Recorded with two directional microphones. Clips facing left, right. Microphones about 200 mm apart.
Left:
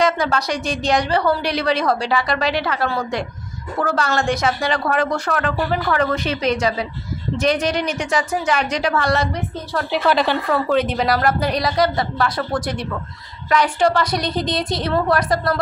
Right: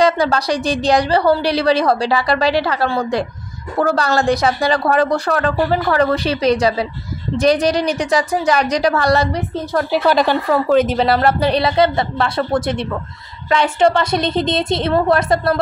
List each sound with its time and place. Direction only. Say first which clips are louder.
0.0 s a woman's voice: right 4 dB; 35° right (ahead or behind)
11.0 s a woman's voice: right 4 dB; 30° right (ahead or behind)